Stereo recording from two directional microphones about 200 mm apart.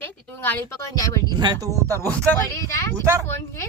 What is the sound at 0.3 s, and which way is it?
Speech, 10° left (ahead or behind).